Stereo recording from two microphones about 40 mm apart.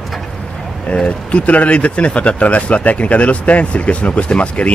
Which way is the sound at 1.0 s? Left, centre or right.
Left.